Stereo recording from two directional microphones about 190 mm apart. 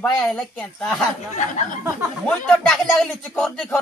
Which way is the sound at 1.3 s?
40° left (ahead or behind).